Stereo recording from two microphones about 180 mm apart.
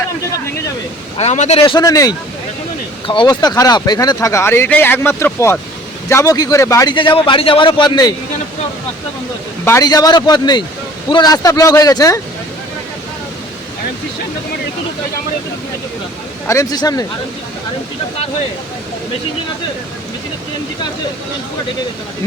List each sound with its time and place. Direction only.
1.2 s speech: 40° left (ahead or behind)
9.6 s speech: 20° left (ahead or behind)
16.5 s speech: 15° left (ahead or behind)